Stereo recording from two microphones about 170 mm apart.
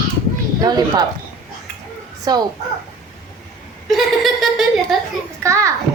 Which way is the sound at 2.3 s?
25° right (ahead or behind).